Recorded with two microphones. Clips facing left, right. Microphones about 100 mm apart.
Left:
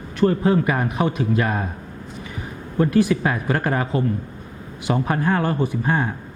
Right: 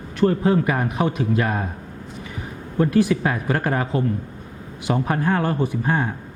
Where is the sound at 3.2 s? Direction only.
20° left (ahead or behind).